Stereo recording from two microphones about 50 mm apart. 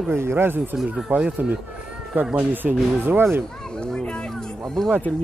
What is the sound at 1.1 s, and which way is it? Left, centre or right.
Speech, right.